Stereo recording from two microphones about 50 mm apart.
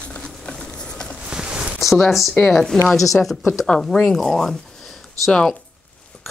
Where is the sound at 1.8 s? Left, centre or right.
Centre.